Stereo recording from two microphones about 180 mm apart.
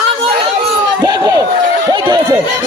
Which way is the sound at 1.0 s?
20° right (ahead or behind).